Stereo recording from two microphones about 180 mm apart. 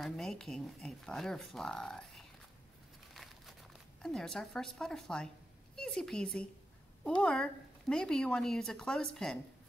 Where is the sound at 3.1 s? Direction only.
Centre (ahead or behind).